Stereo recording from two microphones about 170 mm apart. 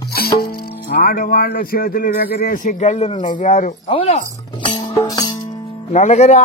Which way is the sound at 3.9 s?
35° left (ahead or behind).